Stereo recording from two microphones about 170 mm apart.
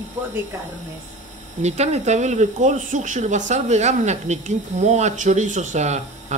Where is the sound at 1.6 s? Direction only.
40° right (ahead or behind).